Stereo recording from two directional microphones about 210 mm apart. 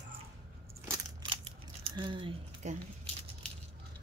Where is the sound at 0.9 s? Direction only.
25° right (ahead or behind).